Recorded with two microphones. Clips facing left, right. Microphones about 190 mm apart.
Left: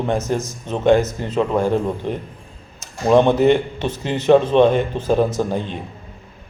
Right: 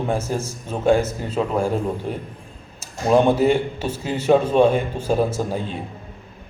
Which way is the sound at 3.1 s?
10° right (ahead or behind).